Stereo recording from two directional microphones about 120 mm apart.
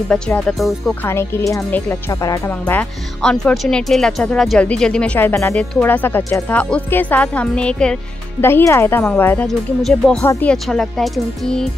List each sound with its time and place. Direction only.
0.1 s speech: 5° left (ahead or behind)
1.0 s speech: 20° left (ahead or behind)
2.6 s speech: 15° left (ahead or behind)
8.4 s speech: 20° left (ahead or behind)
9.8 s speech: 5° left (ahead or behind)